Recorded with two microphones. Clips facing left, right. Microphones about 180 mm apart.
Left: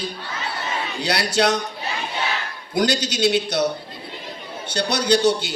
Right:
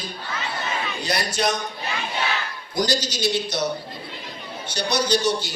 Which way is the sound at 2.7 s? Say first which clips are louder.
Left 3 dB; 60° left (ahead or behind).